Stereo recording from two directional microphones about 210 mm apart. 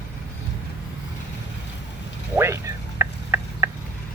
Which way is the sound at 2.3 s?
10° right (ahead or behind).